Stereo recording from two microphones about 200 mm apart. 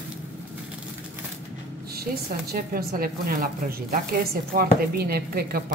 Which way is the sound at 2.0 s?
50° right (ahead or behind).